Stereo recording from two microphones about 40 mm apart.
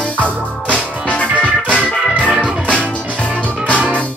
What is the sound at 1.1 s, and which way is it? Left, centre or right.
Music, left.